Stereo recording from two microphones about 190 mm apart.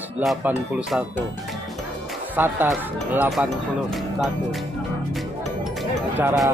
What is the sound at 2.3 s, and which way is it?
Speech, 10° right (ahead or behind).